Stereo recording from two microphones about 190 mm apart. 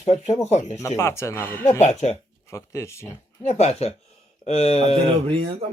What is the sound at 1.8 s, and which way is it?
Speech, 35° left (ahead or behind).